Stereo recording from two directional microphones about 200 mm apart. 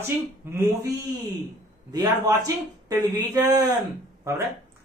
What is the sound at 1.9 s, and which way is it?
A woman's voice, 15° right (ahead or behind).